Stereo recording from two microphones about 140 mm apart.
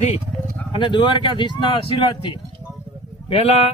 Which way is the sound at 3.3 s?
45° left (ahead or behind).